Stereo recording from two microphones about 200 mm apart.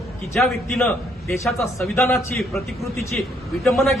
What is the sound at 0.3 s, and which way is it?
Speech, centre (ahead or behind).